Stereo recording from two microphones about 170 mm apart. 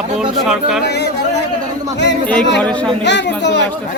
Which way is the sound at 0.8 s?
80° left.